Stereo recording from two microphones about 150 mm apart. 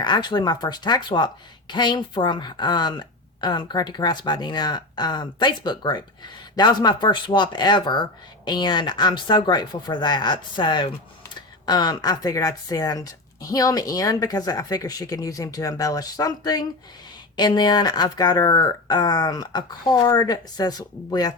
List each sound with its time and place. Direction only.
0.0 s speech: 30° left (ahead or behind)